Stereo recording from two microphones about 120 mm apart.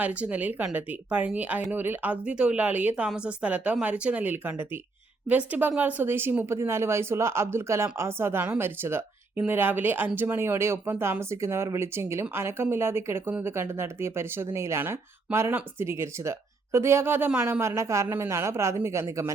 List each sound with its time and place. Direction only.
0.0 s speech: 10° right (ahead or behind)